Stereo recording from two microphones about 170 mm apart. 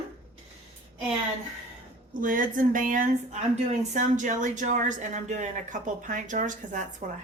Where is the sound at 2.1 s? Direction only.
55° right (ahead or behind).